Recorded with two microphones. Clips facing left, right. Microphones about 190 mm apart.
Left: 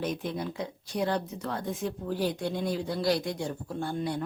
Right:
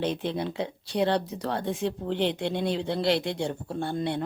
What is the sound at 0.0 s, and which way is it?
Speech, 30° right (ahead or behind).